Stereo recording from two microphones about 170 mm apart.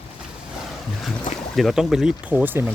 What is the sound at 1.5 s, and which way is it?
Speech, centre (ahead or behind).